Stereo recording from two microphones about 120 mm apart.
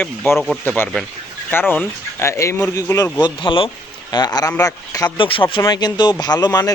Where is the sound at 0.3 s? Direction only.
Centre (ahead or behind).